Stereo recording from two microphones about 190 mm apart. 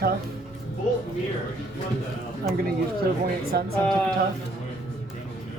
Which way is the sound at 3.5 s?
55° right (ahead or behind).